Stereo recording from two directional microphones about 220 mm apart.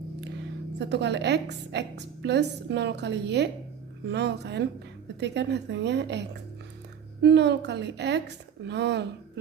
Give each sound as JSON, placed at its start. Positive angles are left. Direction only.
{"t": 0.8, "sound": "a woman's voice", "side_deg": -50}